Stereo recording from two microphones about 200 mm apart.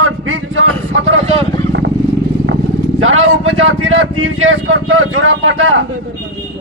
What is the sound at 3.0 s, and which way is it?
Speech, 80° right.